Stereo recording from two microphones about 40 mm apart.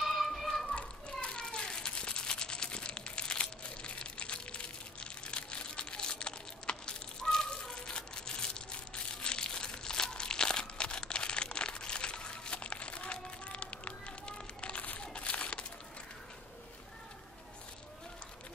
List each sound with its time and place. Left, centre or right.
0.0 s children playing: centre
1.2 s children playing: left
1.9 s crumpling: left